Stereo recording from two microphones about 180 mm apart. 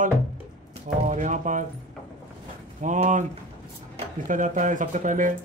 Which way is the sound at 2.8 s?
45° right (ahead or behind).